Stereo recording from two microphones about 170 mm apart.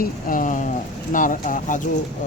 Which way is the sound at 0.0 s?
55° left (ahead or behind).